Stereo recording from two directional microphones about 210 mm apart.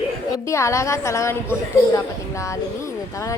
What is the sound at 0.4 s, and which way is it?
A woman's voice, 15° left (ahead or behind).